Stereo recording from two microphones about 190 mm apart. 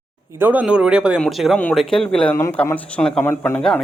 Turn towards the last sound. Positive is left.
turn(degrees=5)  # may be behind; listen again after turning